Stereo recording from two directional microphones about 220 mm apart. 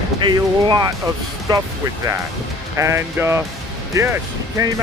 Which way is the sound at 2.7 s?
10° right (ahead or behind).